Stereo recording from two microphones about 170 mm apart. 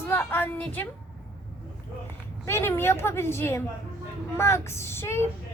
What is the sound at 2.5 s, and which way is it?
A woman's voice, 15° left (ahead or behind).